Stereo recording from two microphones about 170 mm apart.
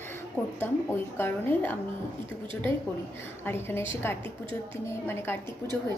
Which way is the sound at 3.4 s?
15° left (ahead or behind).